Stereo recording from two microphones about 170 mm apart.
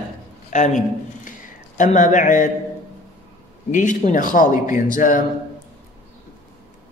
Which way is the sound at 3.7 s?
50° left (ahead or behind).